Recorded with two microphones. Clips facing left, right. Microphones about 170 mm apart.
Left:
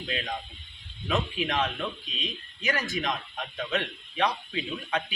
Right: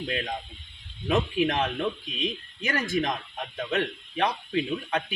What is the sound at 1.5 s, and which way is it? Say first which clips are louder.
A man's voice: right 3 dB; 50° right (ahead or behind).